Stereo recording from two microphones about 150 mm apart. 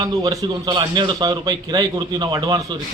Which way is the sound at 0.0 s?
25° right (ahead or behind).